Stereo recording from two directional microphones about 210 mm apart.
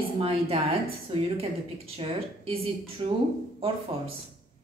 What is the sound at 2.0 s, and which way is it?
Speech, 30° right (ahead or behind).